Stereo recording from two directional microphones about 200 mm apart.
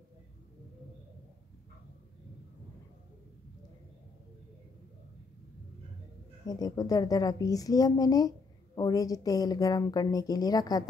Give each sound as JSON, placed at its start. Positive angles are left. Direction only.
{"t": 6.4, "sound": "a woman's voice", "side_deg": 20}